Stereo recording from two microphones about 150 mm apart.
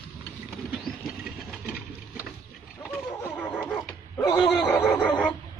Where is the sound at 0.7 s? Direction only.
Centre (ahead or behind).